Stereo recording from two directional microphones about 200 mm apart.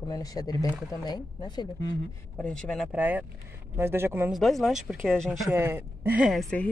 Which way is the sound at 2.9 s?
10° right (ahead or behind).